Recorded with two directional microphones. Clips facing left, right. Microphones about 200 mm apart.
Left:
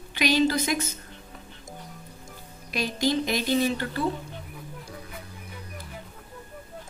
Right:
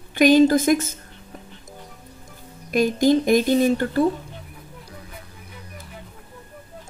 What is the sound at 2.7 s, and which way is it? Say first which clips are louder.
Speech: right 9 dB; 50° right (ahead or behind).